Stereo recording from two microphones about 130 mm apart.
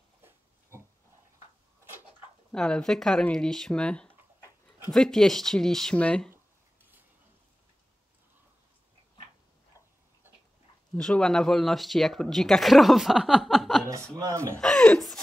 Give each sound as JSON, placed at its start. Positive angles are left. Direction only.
{"t": 0.2, "sound": "pig", "side_deg": -20}
{"t": 2.5, "sound": "speech", "side_deg": 5}
{"t": 6.3, "sound": "a sound", "side_deg": -15}
{"t": 11.0, "sound": "speech", "side_deg": 5}
{"t": 14.1, "sound": "speech", "side_deg": -25}
{"t": 14.6, "sound": "speech", "side_deg": 5}